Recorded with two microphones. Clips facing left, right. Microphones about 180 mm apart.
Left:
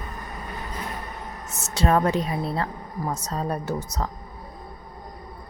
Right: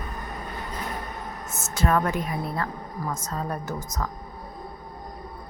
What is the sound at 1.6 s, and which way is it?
A woman's voice, 30° left (ahead or behind).